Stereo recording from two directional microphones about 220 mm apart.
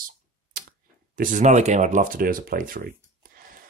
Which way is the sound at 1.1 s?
35° right (ahead or behind).